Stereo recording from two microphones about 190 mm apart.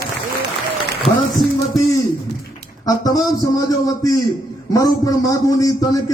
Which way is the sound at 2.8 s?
20° left (ahead or behind).